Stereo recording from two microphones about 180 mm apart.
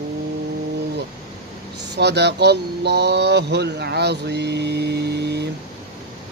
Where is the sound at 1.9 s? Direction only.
70° right (ahead or behind).